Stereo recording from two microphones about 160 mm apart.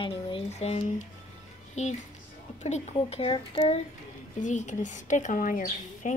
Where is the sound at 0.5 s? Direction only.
45° left (ahead or behind).